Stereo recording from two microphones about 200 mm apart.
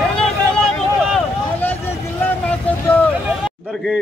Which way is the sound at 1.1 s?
10° left (ahead or behind).